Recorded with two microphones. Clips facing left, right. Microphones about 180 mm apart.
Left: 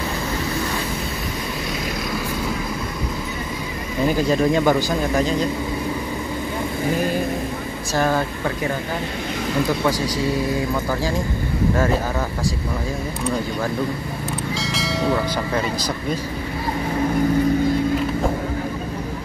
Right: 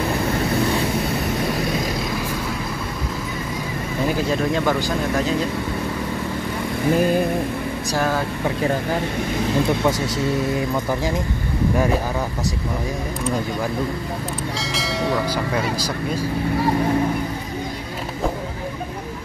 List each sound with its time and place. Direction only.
4.3 s speech: centre (ahead or behind)
9.7 s speech: 20° right (ahead or behind)
14.6 s bell: centre (ahead or behind)